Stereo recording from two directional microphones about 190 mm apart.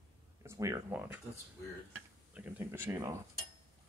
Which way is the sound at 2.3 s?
10° right (ahead or behind).